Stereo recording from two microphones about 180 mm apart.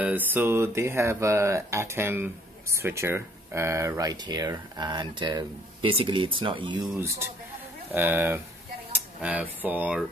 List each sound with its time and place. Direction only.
0.0 s speech: 10° right (ahead or behind); by 6.8 s 25° right (ahead or behind)
7.0 s speech: 15° right (ahead or behind)